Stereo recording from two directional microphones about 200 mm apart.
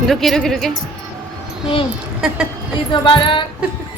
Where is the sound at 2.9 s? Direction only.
25° left (ahead or behind).